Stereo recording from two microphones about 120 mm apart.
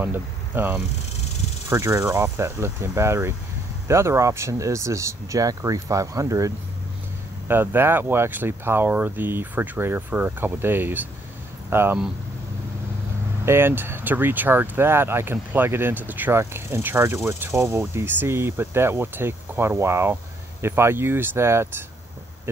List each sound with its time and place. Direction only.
0.0 s speech: 15° right (ahead or behind)
7.4 s speech: 20° right (ahead or behind)
13.5 s speech: 20° right (ahead or behind)